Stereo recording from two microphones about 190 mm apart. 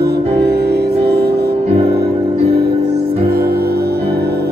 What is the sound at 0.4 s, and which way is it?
Music, 60° right (ahead or behind).